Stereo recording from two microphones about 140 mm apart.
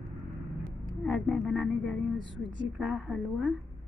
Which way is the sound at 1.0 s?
5° left (ahead or behind).